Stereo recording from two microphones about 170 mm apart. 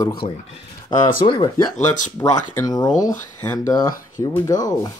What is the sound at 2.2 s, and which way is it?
Speech, 15° left (ahead or behind).